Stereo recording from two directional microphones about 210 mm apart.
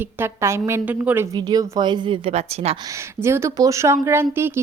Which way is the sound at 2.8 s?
15° right (ahead or behind).